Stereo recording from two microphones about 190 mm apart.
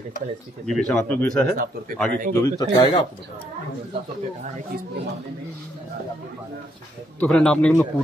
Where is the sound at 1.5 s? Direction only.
50° right (ahead or behind).